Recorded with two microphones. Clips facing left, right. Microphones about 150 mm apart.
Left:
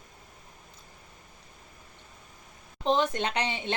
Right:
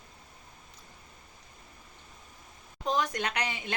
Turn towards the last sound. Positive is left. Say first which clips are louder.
# left 4 dB
turn(degrees=25)  # may be behind; listen again after turning